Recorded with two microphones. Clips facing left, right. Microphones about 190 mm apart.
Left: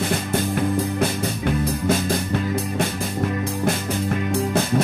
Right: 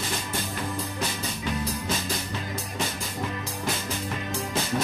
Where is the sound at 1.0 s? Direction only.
55° left (ahead or behind).